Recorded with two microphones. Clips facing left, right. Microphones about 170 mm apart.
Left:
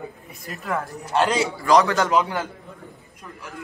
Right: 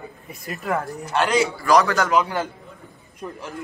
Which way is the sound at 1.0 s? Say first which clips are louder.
Even; 30° left (ahead or behind).